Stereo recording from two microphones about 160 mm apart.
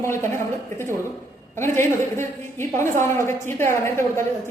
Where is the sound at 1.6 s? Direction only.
15° left (ahead or behind).